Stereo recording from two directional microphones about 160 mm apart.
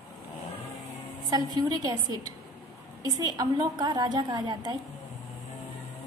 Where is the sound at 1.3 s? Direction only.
25° right (ahead or behind).